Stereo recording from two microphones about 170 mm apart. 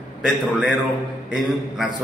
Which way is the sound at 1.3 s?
Centre (ahead or behind).